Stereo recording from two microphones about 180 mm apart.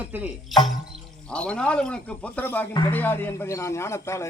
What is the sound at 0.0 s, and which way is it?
Speech, 10° right (ahead or behind).